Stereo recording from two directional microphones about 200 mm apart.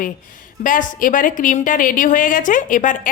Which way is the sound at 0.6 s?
40° left (ahead or behind).